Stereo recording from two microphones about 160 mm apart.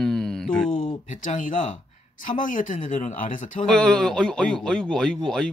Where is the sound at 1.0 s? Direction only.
55° left (ahead or behind).